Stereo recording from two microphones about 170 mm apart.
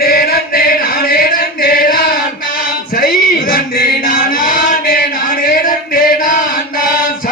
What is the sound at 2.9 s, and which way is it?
Music, 55° left (ahead or behind).